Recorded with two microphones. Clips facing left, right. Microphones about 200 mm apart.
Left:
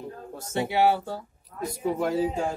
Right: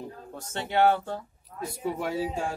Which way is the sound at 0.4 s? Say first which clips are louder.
Left 1 dB; 10° left (ahead or behind).